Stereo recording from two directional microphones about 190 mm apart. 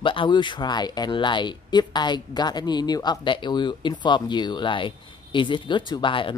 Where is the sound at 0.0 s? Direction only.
25° left (ahead or behind).